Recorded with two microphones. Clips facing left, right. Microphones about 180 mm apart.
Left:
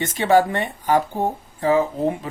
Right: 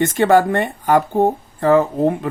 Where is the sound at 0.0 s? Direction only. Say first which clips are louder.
Right 3 dB; 50° right (ahead or behind).